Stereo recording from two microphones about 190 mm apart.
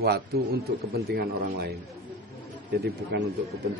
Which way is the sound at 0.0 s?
55° right (ahead or behind).